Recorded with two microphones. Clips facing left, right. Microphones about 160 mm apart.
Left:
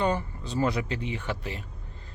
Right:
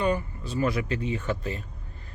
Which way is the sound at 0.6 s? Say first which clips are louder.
Right 1 dB; 25° left (ahead or behind).